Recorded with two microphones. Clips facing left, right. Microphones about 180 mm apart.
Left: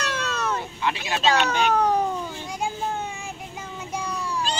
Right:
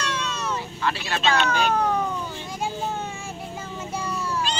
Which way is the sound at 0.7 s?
15° left (ahead or behind).